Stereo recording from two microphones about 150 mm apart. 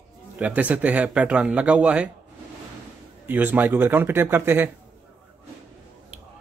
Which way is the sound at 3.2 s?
10° right (ahead or behind).